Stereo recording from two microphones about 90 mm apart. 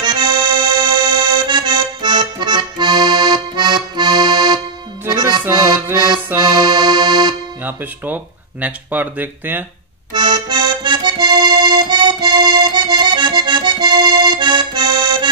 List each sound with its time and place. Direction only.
0.0 s accordion: 55° right (ahead or behind)
7.6 s speech: 20° right (ahead or behind)
10.1 s accordion: 55° right (ahead or behind)